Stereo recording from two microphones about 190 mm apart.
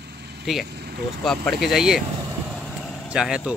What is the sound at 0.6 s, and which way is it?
Speech, 60° right (ahead or behind).